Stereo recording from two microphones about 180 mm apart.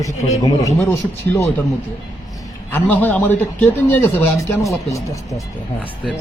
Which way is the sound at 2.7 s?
10° left (ahead or behind).